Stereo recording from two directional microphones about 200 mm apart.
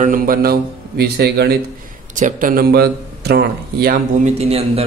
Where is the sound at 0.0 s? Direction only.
45° right (ahead or behind).